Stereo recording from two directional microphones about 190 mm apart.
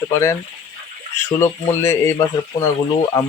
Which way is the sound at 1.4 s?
15° left (ahead or behind).